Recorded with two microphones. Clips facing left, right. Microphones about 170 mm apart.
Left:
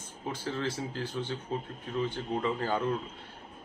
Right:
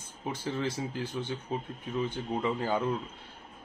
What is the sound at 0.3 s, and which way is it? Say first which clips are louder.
Speech: right 1 dB; 15° right (ahead or behind).